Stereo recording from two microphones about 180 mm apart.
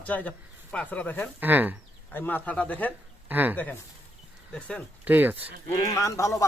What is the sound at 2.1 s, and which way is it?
Speech, 10° left (ahead or behind).